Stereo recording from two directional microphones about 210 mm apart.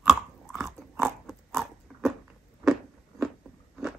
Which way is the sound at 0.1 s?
Centre (ahead or behind).